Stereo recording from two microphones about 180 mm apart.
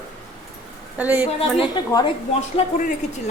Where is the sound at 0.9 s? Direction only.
10° right (ahead or behind).